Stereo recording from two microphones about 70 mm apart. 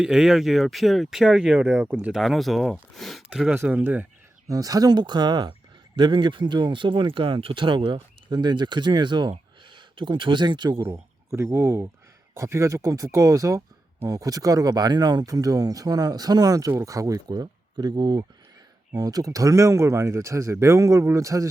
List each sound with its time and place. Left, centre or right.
0.0 s speech: centre
1.2 s speech: centre
1.7 s speech: right
2.1 s speech: centre
3.2 s speech: centre
3.7 s speech: right
4.4 s speech: right
8.3 s speech: right
10.3 s speech: right
10.8 s speech: right
18.9 s speech: right